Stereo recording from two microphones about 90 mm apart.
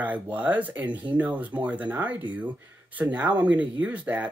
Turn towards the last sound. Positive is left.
turn(degrees=-15)  # may be behind; listen again after turning